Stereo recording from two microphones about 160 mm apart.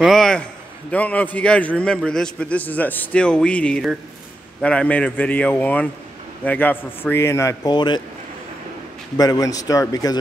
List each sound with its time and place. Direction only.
0.0 s a man's voice: centre (ahead or behind); by 8.0 s 25° left (ahead or behind)
9.1 s a man's voice: 25° left (ahead or behind)